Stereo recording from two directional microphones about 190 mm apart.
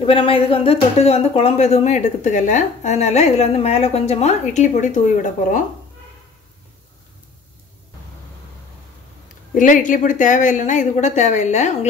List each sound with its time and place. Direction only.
0.0 s speech: 30° left (ahead or behind)
9.5 s speech: 45° left (ahead or behind)